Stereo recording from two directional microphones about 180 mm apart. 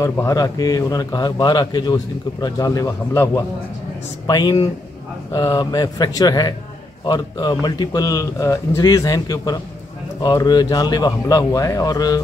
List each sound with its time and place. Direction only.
0.0 s speech: 20° left (ahead or behind)
4.3 s speech: 20° left (ahead or behind)